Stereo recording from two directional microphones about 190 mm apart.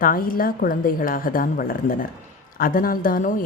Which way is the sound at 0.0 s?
50° left (ahead or behind).